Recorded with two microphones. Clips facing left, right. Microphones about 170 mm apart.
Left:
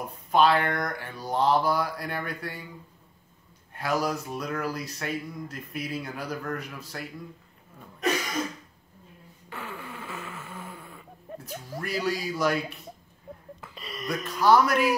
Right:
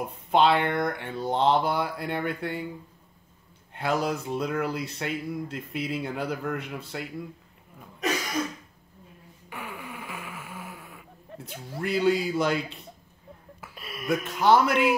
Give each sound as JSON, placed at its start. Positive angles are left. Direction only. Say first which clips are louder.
{"t": 0.1, "sound": "speech", "louder": "even", "side_deg": -25}
{"t": 3.7, "sound": "speech", "louder": "right 1 dB", "side_deg": -25}
{"t": 9.5, "sound": "fart", "louder": "even", "side_deg": -15}
{"t": 11.8, "sound": "speech", "louder": "right 6 dB", "side_deg": -25}
{"t": 13.6, "sound": "a sound", "louder": "right 2 dB", "side_deg": -5}
{"t": 14.2, "sound": "speech", "louder": "left 1 dB", "side_deg": -25}